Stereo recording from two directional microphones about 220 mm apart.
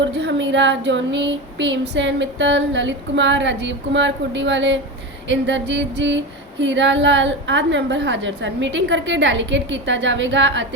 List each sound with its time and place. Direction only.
0.2 s female singing: 55° right (ahead or behind)